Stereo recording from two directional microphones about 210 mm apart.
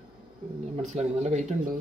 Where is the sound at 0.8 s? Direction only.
35° right (ahead or behind).